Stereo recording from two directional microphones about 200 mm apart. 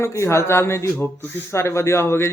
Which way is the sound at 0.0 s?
15° left (ahead or behind).